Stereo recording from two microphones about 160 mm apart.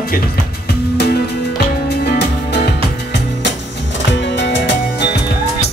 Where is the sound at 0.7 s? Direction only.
80° left.